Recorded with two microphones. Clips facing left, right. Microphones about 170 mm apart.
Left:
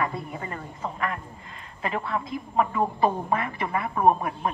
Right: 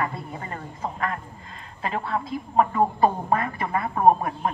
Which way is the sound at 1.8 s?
40° right (ahead or behind).